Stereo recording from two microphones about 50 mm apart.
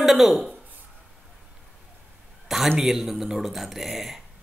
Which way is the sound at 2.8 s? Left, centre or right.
Centre.